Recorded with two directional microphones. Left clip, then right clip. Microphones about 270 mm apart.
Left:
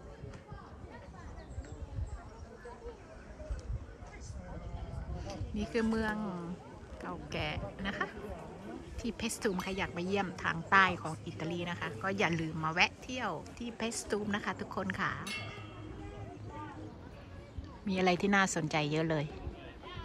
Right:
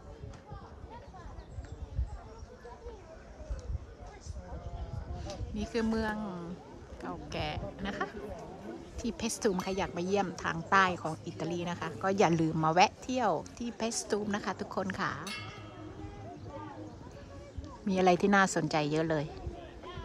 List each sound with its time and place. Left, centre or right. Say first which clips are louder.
5.8 s a woman's voice: right 1 dB; centre
17.8 s a woman's voice: right 4 dB; centre
19.5 s rowboat: right 2 dB; right